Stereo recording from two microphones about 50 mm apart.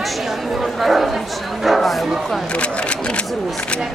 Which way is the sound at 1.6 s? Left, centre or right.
Centre.